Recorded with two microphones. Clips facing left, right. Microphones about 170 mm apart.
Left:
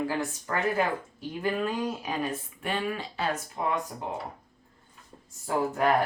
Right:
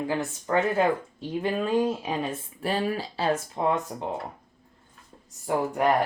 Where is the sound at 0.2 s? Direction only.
25° right (ahead or behind).